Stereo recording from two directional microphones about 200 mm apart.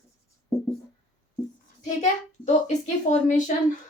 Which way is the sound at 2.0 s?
35° left (ahead or behind).